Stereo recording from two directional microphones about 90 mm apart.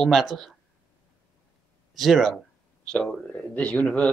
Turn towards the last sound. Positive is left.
turn(degrees=15)  # may be behind; listen again after turning